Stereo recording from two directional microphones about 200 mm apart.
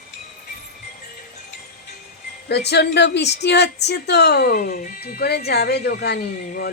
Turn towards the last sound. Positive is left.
turn(degrees=50)  # may be behind; listen again after turning